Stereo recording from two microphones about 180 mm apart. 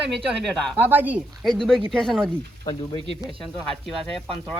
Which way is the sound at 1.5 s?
Centre (ahead or behind).